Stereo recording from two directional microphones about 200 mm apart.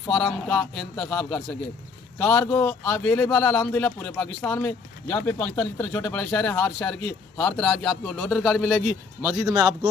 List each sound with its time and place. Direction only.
0.1 s a man's voice: 5° left (ahead or behind)
9.2 s a man's voice: 15° right (ahead or behind)